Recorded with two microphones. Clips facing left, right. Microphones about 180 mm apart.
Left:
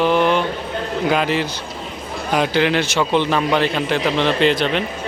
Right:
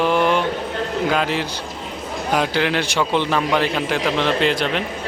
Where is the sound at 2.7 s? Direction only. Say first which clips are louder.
Left 2 dB; 15° left (ahead or behind).